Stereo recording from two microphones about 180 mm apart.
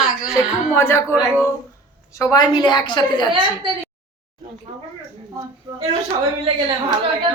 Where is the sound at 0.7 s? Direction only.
15° left (ahead or behind).